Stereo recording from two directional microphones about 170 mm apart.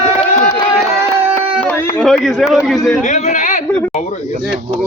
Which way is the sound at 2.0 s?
Centre (ahead or behind).